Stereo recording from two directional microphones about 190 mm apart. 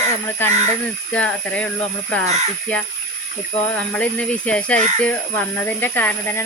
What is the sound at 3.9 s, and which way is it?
Speech, 5° left (ahead or behind).